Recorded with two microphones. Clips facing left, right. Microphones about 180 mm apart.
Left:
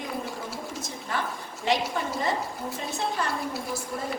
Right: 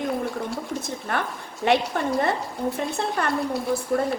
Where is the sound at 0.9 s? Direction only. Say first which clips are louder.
Right 4 dB; 60° right (ahead or behind).